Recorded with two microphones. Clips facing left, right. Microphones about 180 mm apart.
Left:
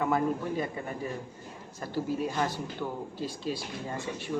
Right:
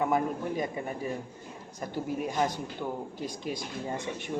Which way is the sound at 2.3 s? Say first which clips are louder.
Right 2 dB; 15° right (ahead or behind).